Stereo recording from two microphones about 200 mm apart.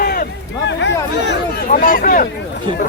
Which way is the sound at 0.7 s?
60° left (ahead or behind).